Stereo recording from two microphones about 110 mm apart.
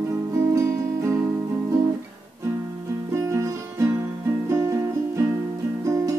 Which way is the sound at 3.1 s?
30° right (ahead or behind).